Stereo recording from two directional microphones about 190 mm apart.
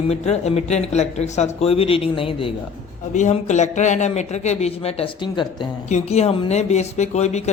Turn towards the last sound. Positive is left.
turn(degrees=35)  # may be behind; listen again after turning